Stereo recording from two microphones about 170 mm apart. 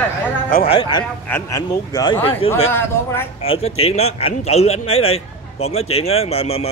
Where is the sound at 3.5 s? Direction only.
35° left (ahead or behind).